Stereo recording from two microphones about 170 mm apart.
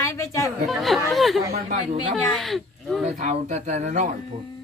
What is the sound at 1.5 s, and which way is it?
Speech, 40° right (ahead or behind).